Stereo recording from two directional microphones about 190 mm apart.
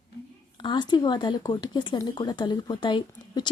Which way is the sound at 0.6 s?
25° left (ahead or behind).